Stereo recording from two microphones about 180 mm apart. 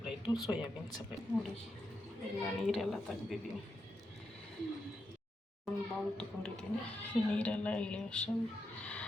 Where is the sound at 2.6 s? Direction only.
Centre (ahead or behind).